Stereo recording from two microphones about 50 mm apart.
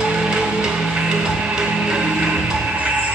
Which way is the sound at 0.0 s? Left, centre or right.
Centre.